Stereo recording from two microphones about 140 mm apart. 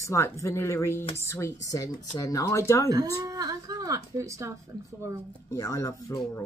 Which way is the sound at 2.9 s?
25° right (ahead or behind).